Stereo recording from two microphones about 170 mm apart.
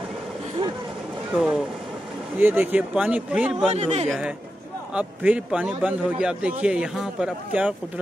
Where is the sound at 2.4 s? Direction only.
10° right (ahead or behind).